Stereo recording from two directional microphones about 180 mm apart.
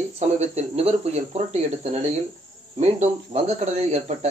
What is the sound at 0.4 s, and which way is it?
Speech, 35° right (ahead or behind).